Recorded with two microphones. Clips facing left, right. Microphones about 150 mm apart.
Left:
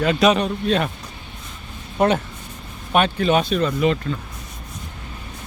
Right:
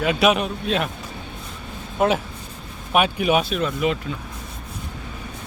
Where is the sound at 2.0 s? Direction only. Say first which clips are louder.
Left 2 dB; 5° right (ahead or behind).